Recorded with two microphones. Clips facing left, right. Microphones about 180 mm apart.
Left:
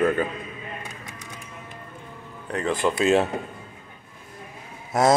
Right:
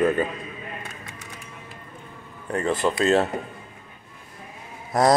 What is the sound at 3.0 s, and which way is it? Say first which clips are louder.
Speech: even; 15° left (ahead or behind).